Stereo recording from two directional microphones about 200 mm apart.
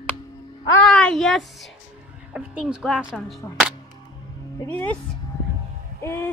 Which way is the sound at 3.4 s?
15° left (ahead or behind).